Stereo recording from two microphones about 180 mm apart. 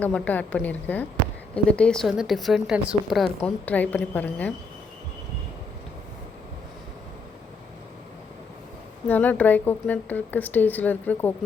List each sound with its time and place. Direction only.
0.0 s a woman's voice: 10° left (ahead or behind)
9.0 s speech: 10° left (ahead or behind)